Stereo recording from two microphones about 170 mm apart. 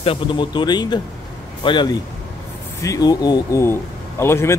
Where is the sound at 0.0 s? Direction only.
30° left (ahead or behind).